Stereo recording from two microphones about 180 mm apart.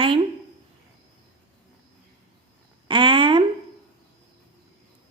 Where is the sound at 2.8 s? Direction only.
25° right (ahead or behind).